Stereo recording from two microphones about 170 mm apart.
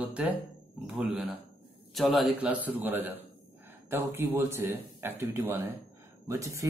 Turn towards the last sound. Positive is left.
turn(degrees=-15)  # may be behind; listen again after turning